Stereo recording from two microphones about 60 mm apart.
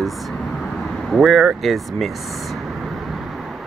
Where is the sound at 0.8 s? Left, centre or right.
Centre.